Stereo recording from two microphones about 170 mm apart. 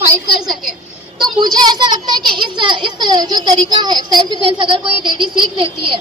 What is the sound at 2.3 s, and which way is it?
A child's voice, 25° right (ahead or behind).